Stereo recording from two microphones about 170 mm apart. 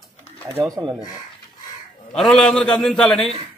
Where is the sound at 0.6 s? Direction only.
20° right (ahead or behind).